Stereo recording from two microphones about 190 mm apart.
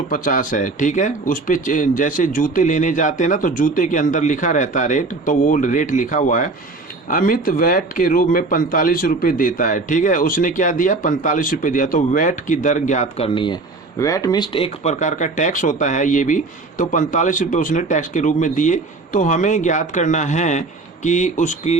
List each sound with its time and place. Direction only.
0.1 s speech: 45° left (ahead or behind)